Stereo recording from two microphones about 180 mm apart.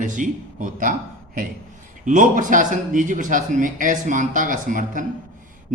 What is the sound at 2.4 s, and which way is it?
Speech, 45° right (ahead or behind).